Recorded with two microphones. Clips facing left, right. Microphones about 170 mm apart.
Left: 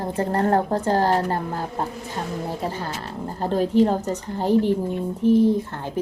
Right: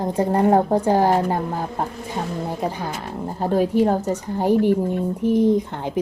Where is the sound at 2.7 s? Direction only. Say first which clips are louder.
Right 2 dB; 15° right (ahead or behind).